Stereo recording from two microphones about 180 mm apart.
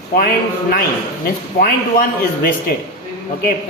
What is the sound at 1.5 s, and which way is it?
Speech, 55° left (ahead or behind).